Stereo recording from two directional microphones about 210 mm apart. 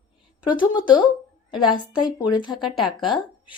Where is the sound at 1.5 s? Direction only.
20° left (ahead or behind).